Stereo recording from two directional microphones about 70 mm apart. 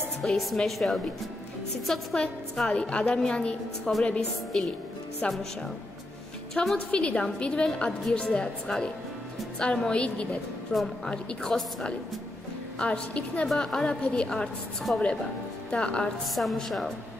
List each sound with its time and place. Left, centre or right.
0.2 s a woman's voice: centre
2.1 s a woman's voice: centre
6.5 s a woman's voice: centre
6.9 s a woman's voice: centre
10.7 s a woman's voice: centre
11.5 s a woman's voice: centre
12.7 s a woman's voice: centre
16.3 s a woman's voice: centre